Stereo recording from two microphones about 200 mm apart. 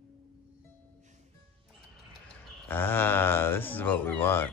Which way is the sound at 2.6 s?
10° left (ahead or behind).